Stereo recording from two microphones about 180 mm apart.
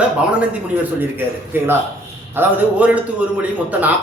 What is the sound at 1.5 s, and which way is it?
A man's voice, 10° right (ahead or behind).